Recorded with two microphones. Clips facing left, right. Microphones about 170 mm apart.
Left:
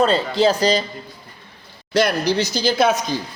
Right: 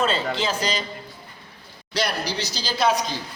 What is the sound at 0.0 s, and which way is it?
Speech, 35° left (ahead or behind).